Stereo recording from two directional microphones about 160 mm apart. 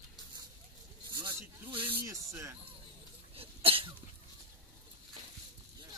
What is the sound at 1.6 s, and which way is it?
Speech, 35° right (ahead or behind).